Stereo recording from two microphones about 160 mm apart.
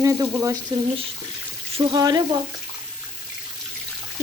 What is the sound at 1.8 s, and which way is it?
Frying, 25° right (ahead or behind).